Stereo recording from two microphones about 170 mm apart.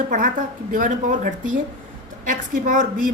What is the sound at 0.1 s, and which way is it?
A woman's voice, 50° right (ahead or behind).